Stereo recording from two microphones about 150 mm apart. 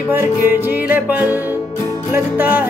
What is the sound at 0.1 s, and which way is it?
Music, 15° right (ahead or behind).